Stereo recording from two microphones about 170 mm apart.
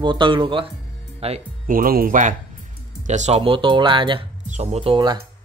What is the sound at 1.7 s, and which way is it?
Speech, 55° right (ahead or behind).